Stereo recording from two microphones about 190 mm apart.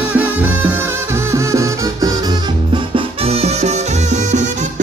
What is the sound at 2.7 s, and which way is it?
Music, 30° right (ahead or behind).